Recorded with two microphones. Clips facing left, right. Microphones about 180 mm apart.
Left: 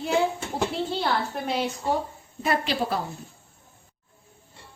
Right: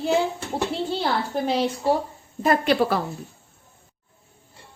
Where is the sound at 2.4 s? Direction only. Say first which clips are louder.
Right 6 dB; 50° right (ahead or behind); by 3.0 s 65° right (ahead or behind).